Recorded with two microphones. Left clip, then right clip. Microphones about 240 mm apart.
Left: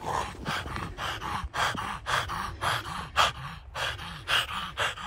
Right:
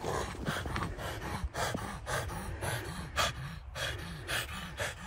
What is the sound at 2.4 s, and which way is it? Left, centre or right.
Gasp, left.